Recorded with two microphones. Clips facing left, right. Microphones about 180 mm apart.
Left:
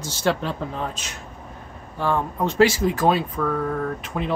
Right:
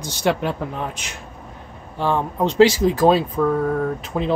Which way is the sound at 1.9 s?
25° right (ahead or behind).